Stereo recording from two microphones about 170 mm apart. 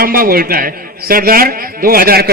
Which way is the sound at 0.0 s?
60° right (ahead or behind).